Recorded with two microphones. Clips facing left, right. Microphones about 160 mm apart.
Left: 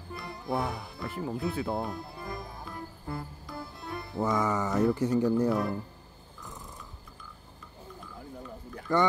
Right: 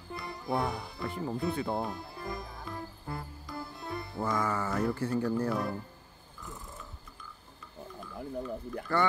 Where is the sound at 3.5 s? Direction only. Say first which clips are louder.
Right 1 dB; centre (ahead or behind).